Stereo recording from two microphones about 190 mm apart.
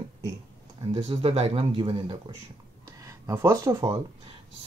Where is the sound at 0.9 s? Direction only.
30° right (ahead or behind); by 4.0 s 15° right (ahead or behind).